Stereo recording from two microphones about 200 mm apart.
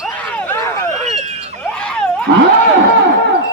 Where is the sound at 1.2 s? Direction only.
35° right (ahead or behind).